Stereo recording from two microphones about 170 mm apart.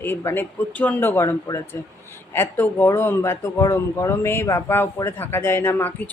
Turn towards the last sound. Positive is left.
turn(degrees=15)  # may be behind; listen again after turning